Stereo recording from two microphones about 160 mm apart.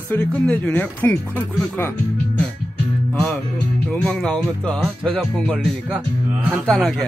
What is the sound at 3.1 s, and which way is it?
Music, 10° left (ahead or behind).